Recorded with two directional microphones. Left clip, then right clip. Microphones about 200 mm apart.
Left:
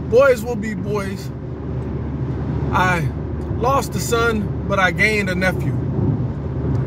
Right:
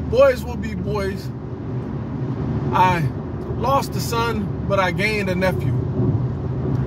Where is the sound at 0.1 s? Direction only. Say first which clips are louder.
Left 2 dB; 25° left (ahead or behind).